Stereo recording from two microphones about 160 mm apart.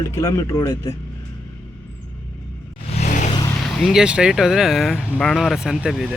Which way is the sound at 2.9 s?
45° left (ahead or behind).